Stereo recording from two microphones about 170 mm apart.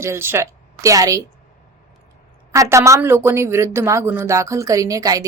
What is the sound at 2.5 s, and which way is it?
Speech, 15° right (ahead or behind).